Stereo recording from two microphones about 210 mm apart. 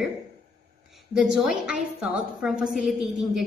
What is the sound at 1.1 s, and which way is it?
A woman's voice, centre (ahead or behind).